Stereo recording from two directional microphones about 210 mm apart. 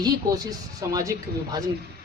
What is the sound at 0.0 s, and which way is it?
A woman's voice, 15° right (ahead or behind).